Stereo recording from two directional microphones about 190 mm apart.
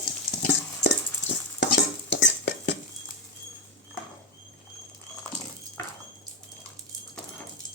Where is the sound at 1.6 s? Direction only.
70° left (ahead or behind).